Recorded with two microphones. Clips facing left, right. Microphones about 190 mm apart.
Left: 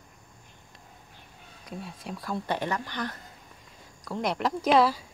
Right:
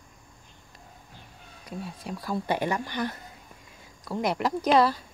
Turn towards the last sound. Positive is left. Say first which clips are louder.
# even
turn(degrees=5)  # may be behind; listen again after turning